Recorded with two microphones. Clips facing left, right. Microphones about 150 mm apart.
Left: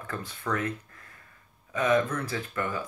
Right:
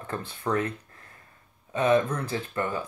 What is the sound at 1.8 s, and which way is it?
Speech, 30° right (ahead or behind).